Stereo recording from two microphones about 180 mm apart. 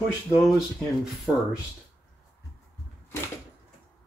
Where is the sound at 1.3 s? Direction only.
5° right (ahead or behind).